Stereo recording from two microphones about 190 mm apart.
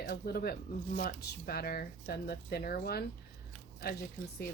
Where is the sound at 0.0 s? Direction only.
55° left (ahead or behind).